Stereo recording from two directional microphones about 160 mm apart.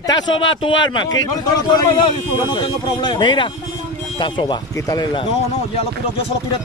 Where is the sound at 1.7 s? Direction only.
30° left (ahead or behind).